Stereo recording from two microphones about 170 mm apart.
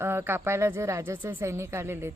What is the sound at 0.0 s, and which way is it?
Speech, 15° right (ahead or behind).